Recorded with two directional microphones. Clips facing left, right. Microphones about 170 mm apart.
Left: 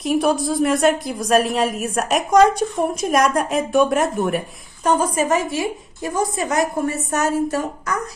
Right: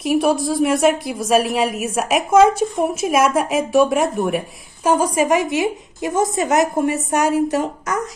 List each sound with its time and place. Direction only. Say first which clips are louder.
0.0 s a woman's voice: right 1 dB; centre (ahead or behind)